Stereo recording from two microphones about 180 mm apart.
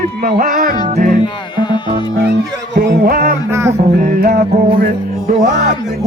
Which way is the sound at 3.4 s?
15° right (ahead or behind).